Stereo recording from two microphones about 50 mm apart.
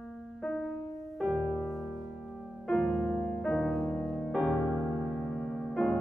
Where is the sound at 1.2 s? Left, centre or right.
Centre.